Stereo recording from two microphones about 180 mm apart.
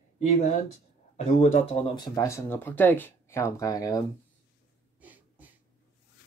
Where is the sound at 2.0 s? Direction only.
20° left (ahead or behind).